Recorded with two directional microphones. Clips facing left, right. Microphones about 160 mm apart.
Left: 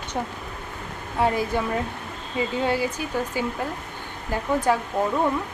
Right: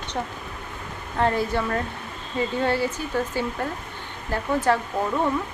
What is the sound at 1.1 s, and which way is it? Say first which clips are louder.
Speech: even; 10° left (ahead or behind).